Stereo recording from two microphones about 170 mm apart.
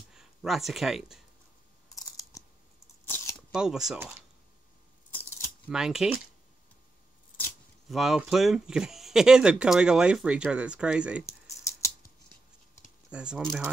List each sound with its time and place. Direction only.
0.1 s speech: 5° right (ahead or behind)
2.0 s scissors: 20° left (ahead or behind)
3.1 s a sound: 15° left (ahead or behind)
3.5 s speech: 5° right (ahead or behind)
5.7 s speech: 5° right (ahead or behind)
7.9 s speech: centre (ahead or behind)
13.1 s speech: 5° right (ahead or behind)